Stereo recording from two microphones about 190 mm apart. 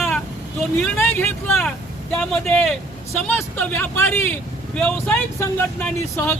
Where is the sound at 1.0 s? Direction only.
10° left (ahead or behind).